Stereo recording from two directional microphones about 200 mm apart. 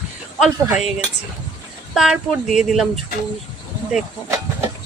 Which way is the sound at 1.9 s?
Centre (ahead or behind).